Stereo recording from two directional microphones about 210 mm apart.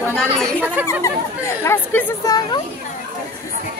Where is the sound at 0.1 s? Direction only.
5° left (ahead or behind).